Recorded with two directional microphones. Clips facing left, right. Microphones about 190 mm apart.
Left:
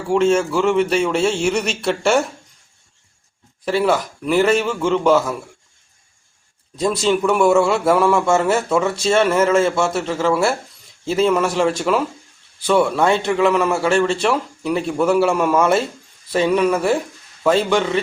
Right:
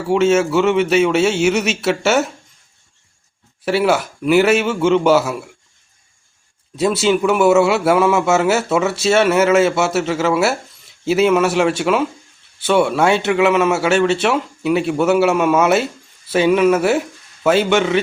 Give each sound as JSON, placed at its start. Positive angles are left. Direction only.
{"t": 0.1, "sound": "a man's voice", "side_deg": -5}
{"t": 3.6, "sound": "a man's voice", "side_deg": -5}
{"t": 6.7, "sound": "a man's voice", "side_deg": -5}